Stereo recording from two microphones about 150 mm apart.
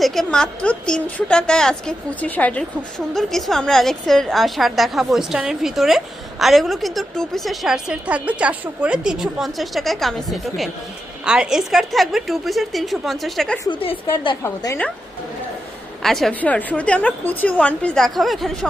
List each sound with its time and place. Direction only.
0.0 s a woman's voice: centre (ahead or behind)
13.8 s a woman's voice: 35° left (ahead or behind)
14.4 s a woman's voice: 20° left (ahead or behind)
16.0 s a woman's voice: centre (ahead or behind)